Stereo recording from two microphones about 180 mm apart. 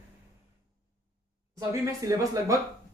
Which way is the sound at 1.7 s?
15° right (ahead or behind).